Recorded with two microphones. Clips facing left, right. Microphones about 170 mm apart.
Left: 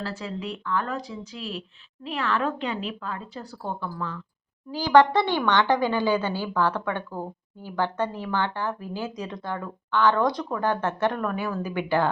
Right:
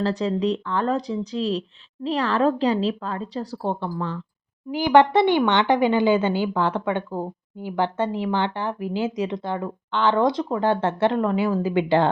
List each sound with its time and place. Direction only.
0.0 s speech: 35° right (ahead or behind)
4.7 s a woman's voice: 20° right (ahead or behind)